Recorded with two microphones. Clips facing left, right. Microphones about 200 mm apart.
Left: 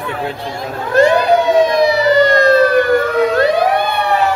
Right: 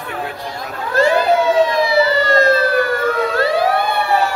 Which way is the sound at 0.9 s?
15° left (ahead or behind).